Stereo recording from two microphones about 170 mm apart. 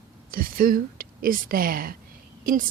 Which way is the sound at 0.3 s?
60° right (ahead or behind).